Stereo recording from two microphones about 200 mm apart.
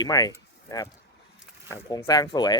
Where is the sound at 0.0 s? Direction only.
20° left (ahead or behind).